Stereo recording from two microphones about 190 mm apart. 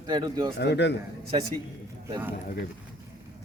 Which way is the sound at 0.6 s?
65° left (ahead or behind).